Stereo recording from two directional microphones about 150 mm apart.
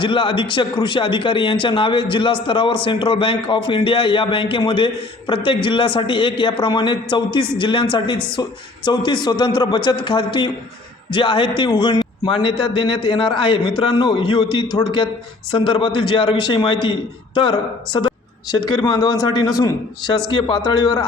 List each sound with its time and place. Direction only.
0.0 s a man's voice: 35° left (ahead or behind)
15.5 s a man's voice: 30° left (ahead or behind)